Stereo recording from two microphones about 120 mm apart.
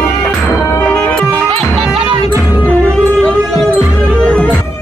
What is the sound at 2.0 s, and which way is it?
Music, 40° right (ahead or behind).